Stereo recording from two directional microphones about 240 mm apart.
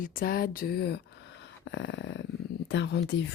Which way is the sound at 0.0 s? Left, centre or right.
Left.